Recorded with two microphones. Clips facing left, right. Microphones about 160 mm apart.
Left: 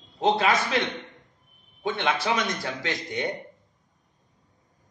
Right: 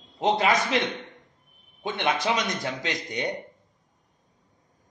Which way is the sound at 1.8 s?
20° right (ahead or behind).